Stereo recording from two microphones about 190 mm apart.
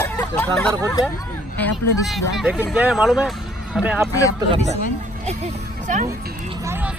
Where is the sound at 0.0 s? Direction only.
10° left (ahead or behind).